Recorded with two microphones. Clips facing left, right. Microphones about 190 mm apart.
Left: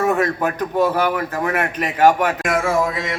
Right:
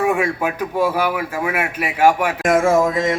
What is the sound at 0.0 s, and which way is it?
A man's voice, 10° right (ahead or behind).